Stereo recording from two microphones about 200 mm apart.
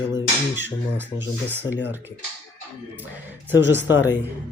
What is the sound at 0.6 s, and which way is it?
Speech, 10° right (ahead or behind).